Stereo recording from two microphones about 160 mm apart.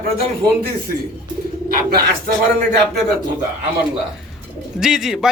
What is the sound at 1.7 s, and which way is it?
Speech, 65° right (ahead or behind).